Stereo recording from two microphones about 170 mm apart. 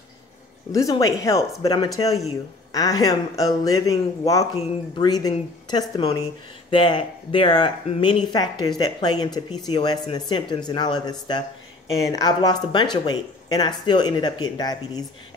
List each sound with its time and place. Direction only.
0.7 s speech: 20° left (ahead or behind)